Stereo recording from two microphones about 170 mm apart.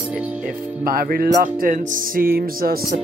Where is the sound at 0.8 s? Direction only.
60° right (ahead or behind).